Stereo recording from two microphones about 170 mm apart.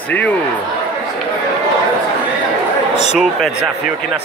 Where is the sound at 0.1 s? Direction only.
10° left (ahead or behind).